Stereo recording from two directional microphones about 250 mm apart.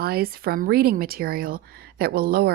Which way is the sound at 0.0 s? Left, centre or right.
Right.